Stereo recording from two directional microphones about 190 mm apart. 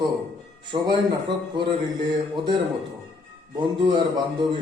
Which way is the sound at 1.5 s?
25° right (ahead or behind).